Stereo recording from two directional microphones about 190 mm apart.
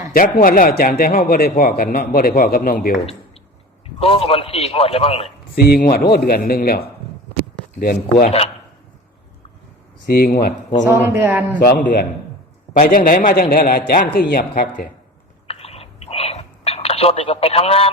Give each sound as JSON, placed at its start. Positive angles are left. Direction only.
{"t": 0.1, "sound": "a man's voice", "side_deg": 45}
{"t": 4.0, "sound": "a man's voice", "side_deg": 30}
{"t": 5.5, "sound": "a man's voice", "side_deg": 55}
{"t": 8.2, "sound": "a man's voice", "side_deg": 30}
{"t": 10.1, "sound": "a man's voice", "side_deg": 50}
{"t": 10.8, "sound": "speech", "side_deg": -10}
{"t": 11.6, "sound": "a man's voice", "side_deg": 50}
{"t": 15.4, "sound": "a sound", "side_deg": 30}